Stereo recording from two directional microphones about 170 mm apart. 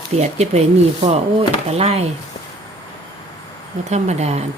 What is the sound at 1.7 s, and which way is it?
Speech, 40° right (ahead or behind).